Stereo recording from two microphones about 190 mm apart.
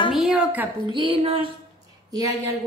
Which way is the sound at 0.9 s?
30° right (ahead or behind).